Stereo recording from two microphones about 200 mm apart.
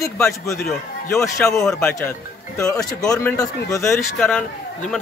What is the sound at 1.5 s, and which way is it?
Speech, 15° left (ahead or behind).